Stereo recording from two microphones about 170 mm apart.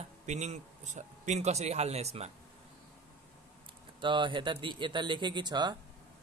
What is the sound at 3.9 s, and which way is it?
Speech, 30° right (ahead or behind).